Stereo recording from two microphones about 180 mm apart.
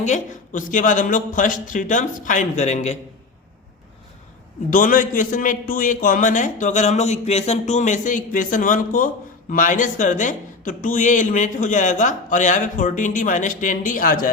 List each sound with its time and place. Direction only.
0.0 s speech: 45° left (ahead or behind)
4.7 s speech: 45° left (ahead or behind)